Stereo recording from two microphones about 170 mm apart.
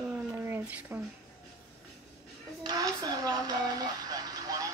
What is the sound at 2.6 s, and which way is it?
Speech, 20° right (ahead or behind).